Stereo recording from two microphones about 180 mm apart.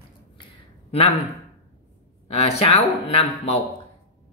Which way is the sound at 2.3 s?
35° left (ahead or behind).